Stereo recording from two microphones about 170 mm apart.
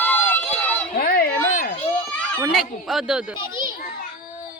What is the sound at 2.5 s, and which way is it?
Speech, centre (ahead or behind).